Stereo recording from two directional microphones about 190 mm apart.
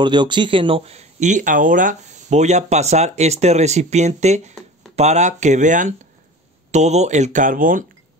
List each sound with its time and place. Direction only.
0.0 s speech: 25° right (ahead or behind); by 7.8 s 45° right (ahead or behind)